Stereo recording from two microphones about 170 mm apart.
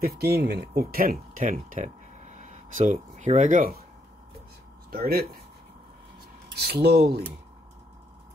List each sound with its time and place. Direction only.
0.0 s speech: 70° right (ahead or behind); by 3.8 s 50° right (ahead or behind)
4.9 s speech: 65° right (ahead or behind)
6.5 s speech: 70° right (ahead or behind)